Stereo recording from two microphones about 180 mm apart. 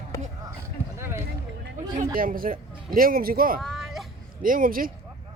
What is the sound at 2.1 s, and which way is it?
Speech, 50° right (ahead or behind).